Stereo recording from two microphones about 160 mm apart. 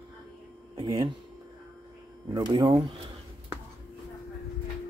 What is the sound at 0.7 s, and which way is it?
Speech, 25° right (ahead or behind).